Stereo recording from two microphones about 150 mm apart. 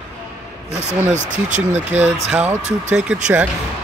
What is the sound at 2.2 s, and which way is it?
Speech, 10° right (ahead or behind).